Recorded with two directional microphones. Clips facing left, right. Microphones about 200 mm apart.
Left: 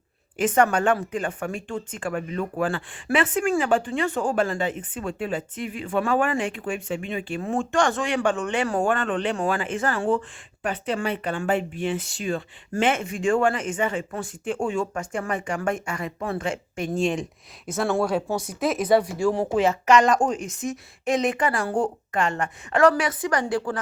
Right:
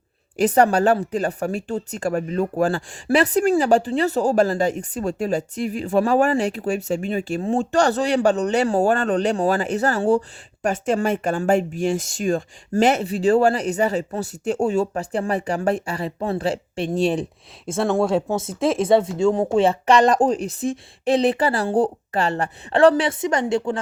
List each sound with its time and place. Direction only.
0.3 s speech: 35° right (ahead or behind)
17.7 s speech: 25° right (ahead or behind)